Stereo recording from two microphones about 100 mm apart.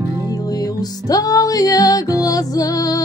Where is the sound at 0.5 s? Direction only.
40° left (ahead or behind).